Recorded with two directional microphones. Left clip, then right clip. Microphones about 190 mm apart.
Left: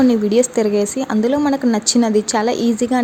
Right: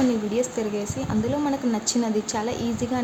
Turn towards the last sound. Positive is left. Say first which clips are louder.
# left 10 dB
turn(degrees=40)  # may be behind; listen again after turning